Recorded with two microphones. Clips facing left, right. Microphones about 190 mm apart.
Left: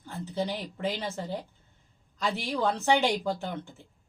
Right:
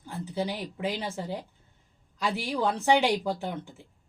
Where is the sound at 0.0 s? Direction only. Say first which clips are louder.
Even; 10° right (ahead or behind).